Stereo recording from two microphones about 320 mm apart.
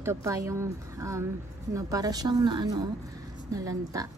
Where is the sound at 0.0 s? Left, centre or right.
Centre.